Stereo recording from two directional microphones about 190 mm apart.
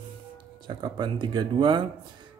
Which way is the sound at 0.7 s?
25° right (ahead or behind).